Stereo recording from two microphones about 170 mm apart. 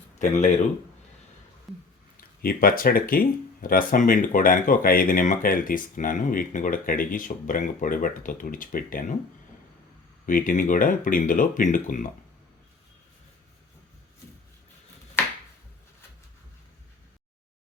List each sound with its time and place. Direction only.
0.2 s speech: 45° left (ahead or behind)
1.7 s a sound: centre (ahead or behind)
2.4 s speech: 60° left (ahead or behind)
10.2 s speech: 55° left (ahead or behind)